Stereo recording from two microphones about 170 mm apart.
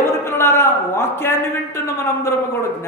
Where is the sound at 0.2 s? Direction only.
15° left (ahead or behind).